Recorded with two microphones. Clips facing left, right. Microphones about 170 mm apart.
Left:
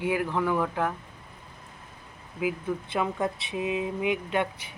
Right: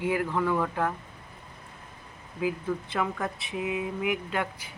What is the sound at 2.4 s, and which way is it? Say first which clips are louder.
Speech: even; 20° left (ahead or behind).